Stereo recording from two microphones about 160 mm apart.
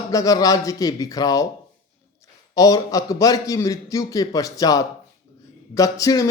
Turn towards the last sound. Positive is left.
turn(degrees=20)  # may be behind; listen again after turning